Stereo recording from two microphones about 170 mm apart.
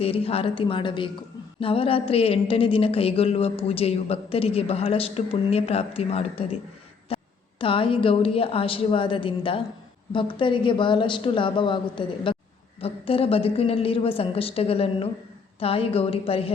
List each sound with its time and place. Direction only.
0.0 s speech: 35° left (ahead or behind)
7.1 s a sound: 35° left (ahead or behind)
7.6 s a woman's voice: 30° left (ahead or behind)